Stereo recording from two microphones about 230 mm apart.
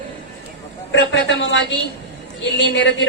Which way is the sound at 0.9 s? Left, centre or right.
Left.